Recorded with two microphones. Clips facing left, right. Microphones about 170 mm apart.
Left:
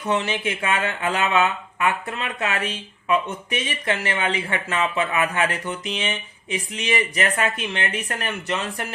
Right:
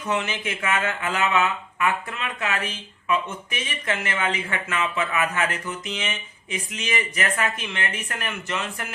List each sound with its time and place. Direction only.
0.0 s speech: 30° left (ahead or behind)